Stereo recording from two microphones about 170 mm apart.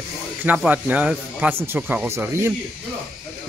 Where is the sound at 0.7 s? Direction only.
10° right (ahead or behind).